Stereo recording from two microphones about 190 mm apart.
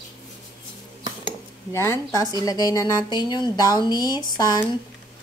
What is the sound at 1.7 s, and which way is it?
A woman's voice, 15° left (ahead or behind).